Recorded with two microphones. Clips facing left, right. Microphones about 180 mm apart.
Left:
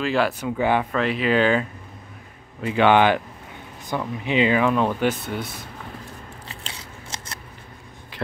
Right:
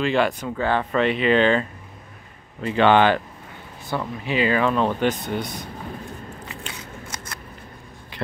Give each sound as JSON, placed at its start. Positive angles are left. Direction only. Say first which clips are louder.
{"t": 0.0, "sound": "speech", "louder": "right 1 dB", "side_deg": 0}
{"t": 0.9, "sound": "speech", "louder": "right 2 dB", "side_deg": 0}
{"t": 4.2, "sound": "speech", "louder": "left 2 dB", "side_deg": 20}
{"t": 6.4, "sound": "scissors", "louder": "right 3 dB", "side_deg": 30}